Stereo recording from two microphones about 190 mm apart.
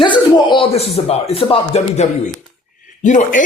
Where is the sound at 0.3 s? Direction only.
25° left (ahead or behind).